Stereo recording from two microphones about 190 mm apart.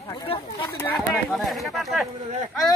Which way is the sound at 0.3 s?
30° left (ahead or behind).